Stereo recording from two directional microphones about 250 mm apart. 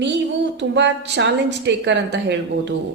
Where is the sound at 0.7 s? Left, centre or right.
Right.